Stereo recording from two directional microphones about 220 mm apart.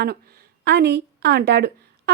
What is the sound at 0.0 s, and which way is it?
A woman's voice, 45° right (ahead or behind).